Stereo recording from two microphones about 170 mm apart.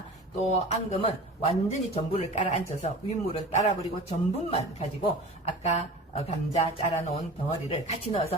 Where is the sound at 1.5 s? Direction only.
40° left (ahead or behind).